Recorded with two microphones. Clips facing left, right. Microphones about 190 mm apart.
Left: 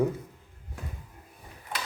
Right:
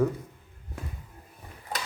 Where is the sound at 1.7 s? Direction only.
45° right (ahead or behind).